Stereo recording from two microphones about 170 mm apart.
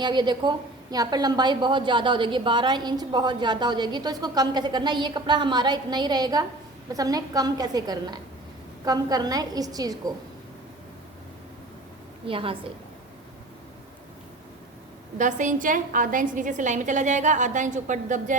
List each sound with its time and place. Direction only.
0.0 s a woman's voice: 25° right (ahead or behind)
12.3 s a woman's voice: 30° right (ahead or behind)
15.2 s a woman's voice: 45° right (ahead or behind)